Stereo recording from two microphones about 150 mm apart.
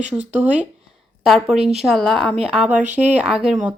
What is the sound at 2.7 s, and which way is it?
Speech, 50° right (ahead or behind).